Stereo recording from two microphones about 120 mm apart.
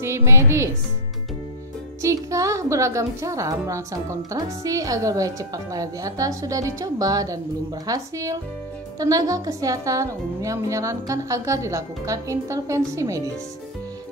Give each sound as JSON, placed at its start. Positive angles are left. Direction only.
{"t": 0.0, "sound": "a woman's voice", "side_deg": -25}
{"t": 2.0, "sound": "a woman's voice", "side_deg": -25}